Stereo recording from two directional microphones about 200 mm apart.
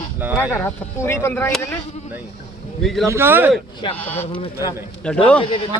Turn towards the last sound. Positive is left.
turn(degrees=25)  # may be behind; listen again after turning